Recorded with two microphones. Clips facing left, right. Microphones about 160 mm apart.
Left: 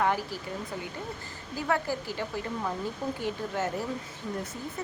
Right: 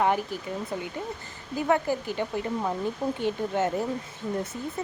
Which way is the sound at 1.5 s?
20° right (ahead or behind).